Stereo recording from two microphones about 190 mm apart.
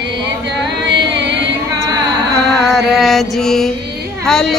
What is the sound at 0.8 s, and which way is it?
Carnatic music, 65° right (ahead or behind).